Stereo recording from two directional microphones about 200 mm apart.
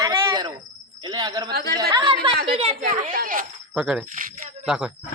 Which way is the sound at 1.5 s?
50° right (ahead or behind).